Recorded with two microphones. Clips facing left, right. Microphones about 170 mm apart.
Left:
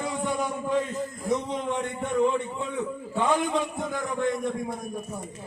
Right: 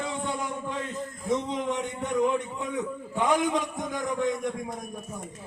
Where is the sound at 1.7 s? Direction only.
15° right (ahead or behind).